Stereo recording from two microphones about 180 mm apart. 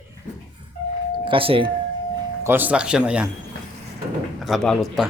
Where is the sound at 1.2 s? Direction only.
30° right (ahead or behind).